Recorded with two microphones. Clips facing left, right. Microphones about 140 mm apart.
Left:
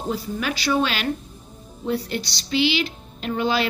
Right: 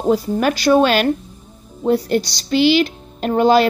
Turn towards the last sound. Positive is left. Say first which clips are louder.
# right 9 dB
turn(degrees=-45)  # may be behind; listen again after turning